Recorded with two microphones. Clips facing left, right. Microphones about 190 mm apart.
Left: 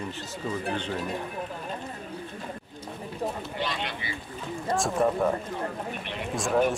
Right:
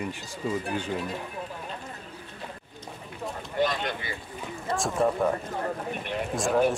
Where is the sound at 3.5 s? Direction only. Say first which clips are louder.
Right 5 dB; 45° right (ahead or behind).